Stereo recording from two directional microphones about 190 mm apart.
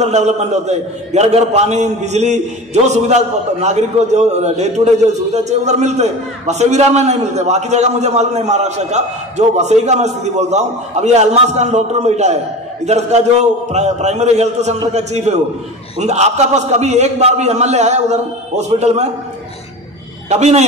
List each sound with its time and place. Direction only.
0.0 s a man's voice: 35° right (ahead or behind)
20.2 s a man's voice: 35° right (ahead or behind)